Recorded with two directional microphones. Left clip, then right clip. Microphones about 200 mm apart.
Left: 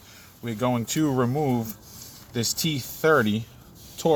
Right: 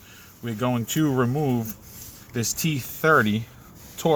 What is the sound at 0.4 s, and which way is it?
Speech, 50° right (ahead or behind).